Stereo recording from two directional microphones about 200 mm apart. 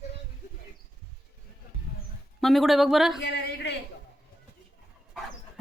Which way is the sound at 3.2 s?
55° left (ahead or behind).